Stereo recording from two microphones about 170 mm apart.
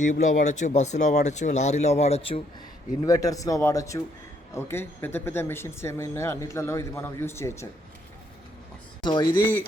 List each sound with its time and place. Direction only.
0.0 s speech: 45° left (ahead or behind)
3.0 s speech: 20° left (ahead or behind)
9.0 s speech: 25° left (ahead or behind)